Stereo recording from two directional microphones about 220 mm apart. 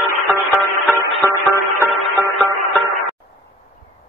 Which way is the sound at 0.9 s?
10° left (ahead or behind).